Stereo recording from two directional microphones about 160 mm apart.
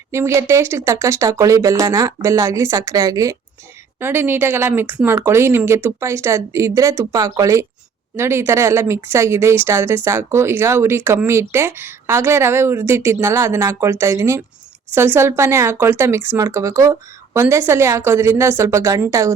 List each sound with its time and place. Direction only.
0.1 s speech: 15° right (ahead or behind)